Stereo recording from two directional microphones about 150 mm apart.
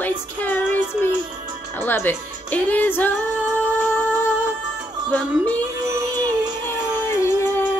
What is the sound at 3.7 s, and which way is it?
Music, 15° left (ahead or behind).